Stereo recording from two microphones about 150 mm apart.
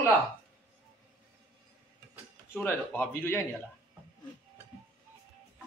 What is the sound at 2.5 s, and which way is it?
Speech, 10° left (ahead or behind).